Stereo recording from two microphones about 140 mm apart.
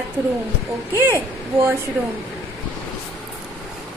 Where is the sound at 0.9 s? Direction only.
15° right (ahead or behind).